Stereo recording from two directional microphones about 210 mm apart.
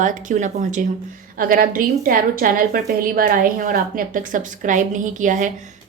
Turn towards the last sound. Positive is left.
turn(degrees=-35)  # may be behind; listen again after turning